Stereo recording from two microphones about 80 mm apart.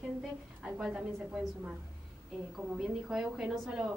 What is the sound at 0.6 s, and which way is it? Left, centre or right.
Speech, centre.